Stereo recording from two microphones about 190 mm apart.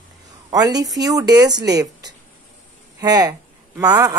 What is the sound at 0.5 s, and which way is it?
A woman's voice, 20° right (ahead or behind).